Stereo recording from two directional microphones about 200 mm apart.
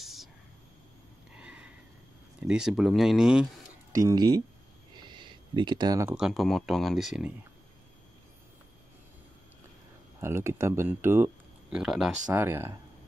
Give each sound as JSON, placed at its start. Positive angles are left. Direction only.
{"t": 0.0, "sound": "whispering", "side_deg": 0}
{"t": 1.4, "sound": "sniff", "side_deg": -5}
{"t": 2.4, "sound": "speech", "side_deg": -5}
{"t": 3.9, "sound": "speech", "side_deg": -20}
{"t": 4.9, "sound": "a sound", "side_deg": -25}
{"t": 6.1, "sound": "speech", "side_deg": 0}
{"t": 10.2, "sound": "speech", "side_deg": -15}